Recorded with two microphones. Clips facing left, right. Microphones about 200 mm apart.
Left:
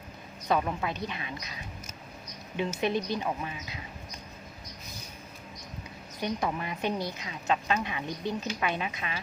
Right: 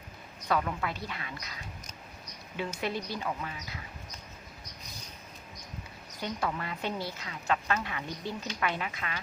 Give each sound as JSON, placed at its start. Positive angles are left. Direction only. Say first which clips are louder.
{"t": 0.4, "sound": "a woman's voice", "louder": "left 2 dB", "side_deg": 20}
{"t": 2.8, "sound": "a woman's voice", "louder": "left 5 dB", "side_deg": 20}
{"t": 6.2, "sound": "a woman's voice", "louder": "left 3 dB", "side_deg": 15}